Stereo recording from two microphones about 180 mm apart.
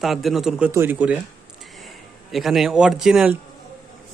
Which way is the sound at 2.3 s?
Centre (ahead or behind).